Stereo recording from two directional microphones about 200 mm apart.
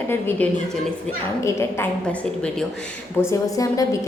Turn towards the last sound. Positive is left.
turn(degrees=15)  # may be behind; listen again after turning